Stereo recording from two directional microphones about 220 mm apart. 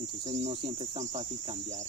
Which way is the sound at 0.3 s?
25° right (ahead or behind).